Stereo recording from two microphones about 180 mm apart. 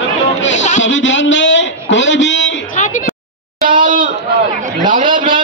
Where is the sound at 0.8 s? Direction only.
90° left.